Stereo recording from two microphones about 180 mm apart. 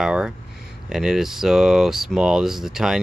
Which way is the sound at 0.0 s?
5° right (ahead or behind).